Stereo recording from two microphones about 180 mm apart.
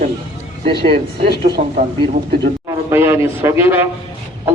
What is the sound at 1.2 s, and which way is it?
Speech, 65° right (ahead or behind).